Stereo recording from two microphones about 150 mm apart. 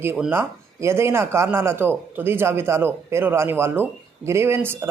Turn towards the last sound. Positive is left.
turn(degrees=-15)  # may be behind; listen again after turning